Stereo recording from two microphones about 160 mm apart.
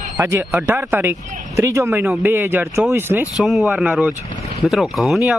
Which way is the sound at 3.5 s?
Centre (ahead or behind).